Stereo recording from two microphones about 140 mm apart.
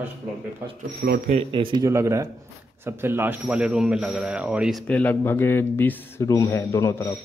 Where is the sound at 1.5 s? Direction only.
35° right (ahead or behind).